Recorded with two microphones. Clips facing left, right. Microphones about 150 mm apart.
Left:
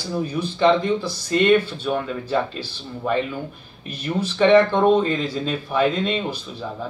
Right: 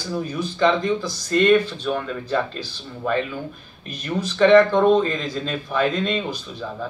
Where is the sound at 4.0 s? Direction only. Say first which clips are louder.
Right 1 dB; 10° left (ahead or behind).